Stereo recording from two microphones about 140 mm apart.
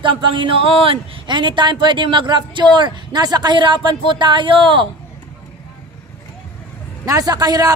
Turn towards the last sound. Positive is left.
turn(degrees=-30)  # may be behind; listen again after turning